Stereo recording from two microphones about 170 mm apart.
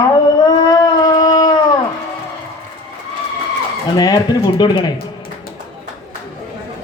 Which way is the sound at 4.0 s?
25° left (ahead or behind).